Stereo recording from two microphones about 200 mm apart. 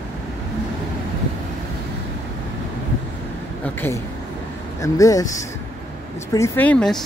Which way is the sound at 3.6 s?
10° left (ahead or behind).